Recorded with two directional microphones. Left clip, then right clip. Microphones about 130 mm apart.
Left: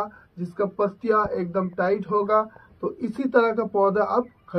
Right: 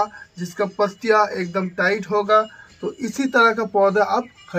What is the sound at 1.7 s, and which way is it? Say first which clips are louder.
Speech: right 4 dB; centre (ahead or behind).